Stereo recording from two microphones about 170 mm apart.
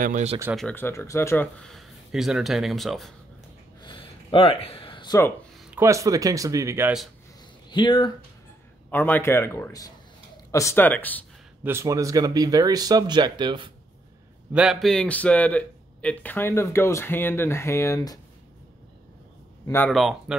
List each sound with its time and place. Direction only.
0.0 s speech: 45° right (ahead or behind)
0.6 s speech: 10° left (ahead or behind)
3.8 s a sound: 30° left (ahead or behind)
5.8 s speech: 20° right (ahead or behind)
7.7 s speech: 25° left (ahead or behind)
8.9 s a man's voice: 10° left (ahead or behind)
11.6 s speech: 15° right (ahead or behind)
14.5 s a man's voice: 5° right (ahead or behind); by 18.2 s 20° left (ahead or behind)
19.6 s speech: 15° left (ahead or behind)
19.9 s speech: centre (ahead or behind)